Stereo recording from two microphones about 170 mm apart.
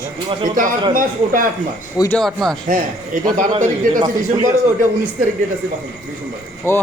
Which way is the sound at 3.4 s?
45° right (ahead or behind).